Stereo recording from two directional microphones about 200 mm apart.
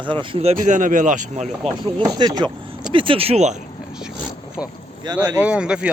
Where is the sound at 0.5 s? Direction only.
40° right (ahead or behind).